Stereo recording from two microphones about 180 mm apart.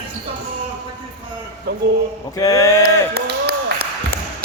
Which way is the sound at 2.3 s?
20° left (ahead or behind).